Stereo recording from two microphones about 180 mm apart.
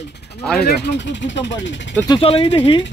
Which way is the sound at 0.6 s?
80° left.